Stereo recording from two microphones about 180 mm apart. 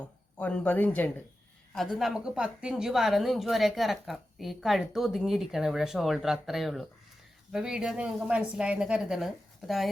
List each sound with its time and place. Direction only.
0.0 s speech: 5° left (ahead or behind)
2.0 s a woman's voice: 5° right (ahead or behind)